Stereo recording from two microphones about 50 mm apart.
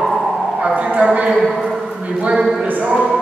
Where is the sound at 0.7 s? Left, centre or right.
Right.